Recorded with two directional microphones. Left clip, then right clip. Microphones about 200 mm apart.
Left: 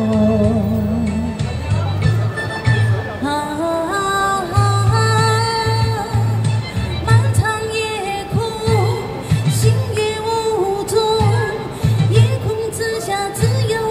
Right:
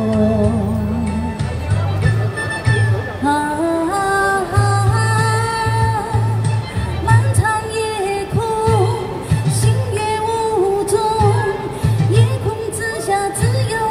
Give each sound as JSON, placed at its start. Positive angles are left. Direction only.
{"t": 0.1, "sound": "music", "side_deg": 20}
{"t": 3.3, "sound": "music", "side_deg": 25}
{"t": 7.1, "sound": "music", "side_deg": 20}